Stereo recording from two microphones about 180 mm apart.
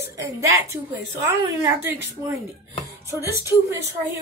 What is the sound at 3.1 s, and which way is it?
Speech, 15° right (ahead or behind).